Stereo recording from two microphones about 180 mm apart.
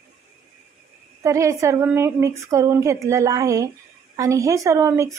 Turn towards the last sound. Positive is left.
turn(degrees=-15)  # may be behind; listen again after turning